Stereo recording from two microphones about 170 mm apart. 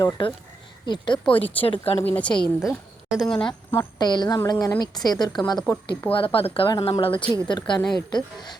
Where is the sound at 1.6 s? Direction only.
30° left (ahead or behind).